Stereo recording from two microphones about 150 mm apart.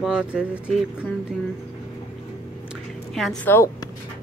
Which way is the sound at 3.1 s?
Centre (ahead or behind).